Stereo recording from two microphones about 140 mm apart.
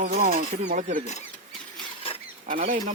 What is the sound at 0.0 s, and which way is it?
Speech, 75° right (ahead or behind).